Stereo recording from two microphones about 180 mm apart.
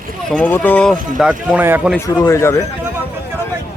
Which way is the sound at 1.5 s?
10° right (ahead or behind).